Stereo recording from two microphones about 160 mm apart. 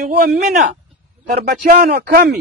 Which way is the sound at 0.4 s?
65° right (ahead or behind).